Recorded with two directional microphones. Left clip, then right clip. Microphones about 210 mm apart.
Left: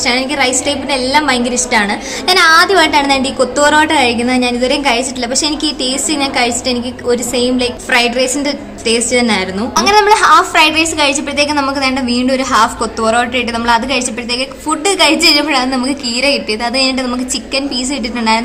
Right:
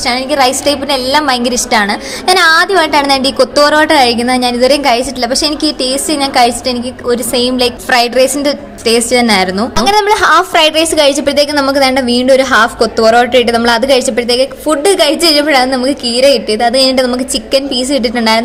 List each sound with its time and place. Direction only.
0.0 s a woman's voice: 15° right (ahead or behind)